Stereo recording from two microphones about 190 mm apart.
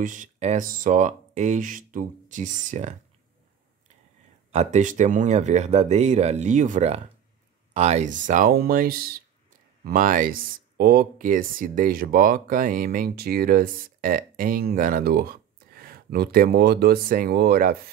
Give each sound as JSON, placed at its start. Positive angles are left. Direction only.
{"t": 0.0, "sound": "speech", "side_deg": -45}
{"t": 4.5, "sound": "speech", "side_deg": -35}